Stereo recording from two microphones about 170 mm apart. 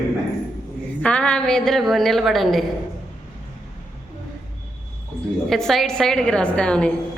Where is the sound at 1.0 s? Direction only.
5° left (ahead or behind).